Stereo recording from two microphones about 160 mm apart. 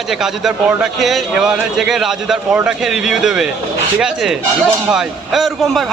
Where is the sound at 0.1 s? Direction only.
5° right (ahead or behind).